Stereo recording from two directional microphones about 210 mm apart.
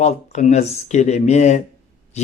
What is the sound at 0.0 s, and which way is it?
Speech, 35° left (ahead or behind).